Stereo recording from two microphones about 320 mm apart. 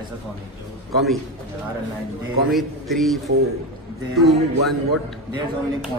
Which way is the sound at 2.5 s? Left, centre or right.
Centre.